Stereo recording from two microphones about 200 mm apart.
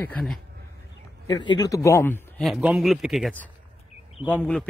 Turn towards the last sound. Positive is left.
turn(degrees=5)  # may be behind; listen again after turning